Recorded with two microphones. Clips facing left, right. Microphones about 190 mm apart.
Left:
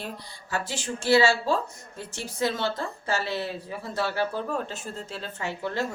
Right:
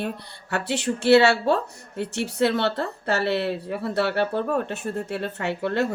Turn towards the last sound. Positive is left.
turn(degrees=-65)  # may be behind; listen again after turning